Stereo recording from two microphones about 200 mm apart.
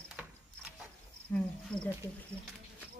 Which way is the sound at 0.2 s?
5° right (ahead or behind).